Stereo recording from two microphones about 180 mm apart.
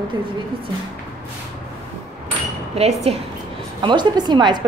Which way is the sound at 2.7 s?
35° right (ahead or behind).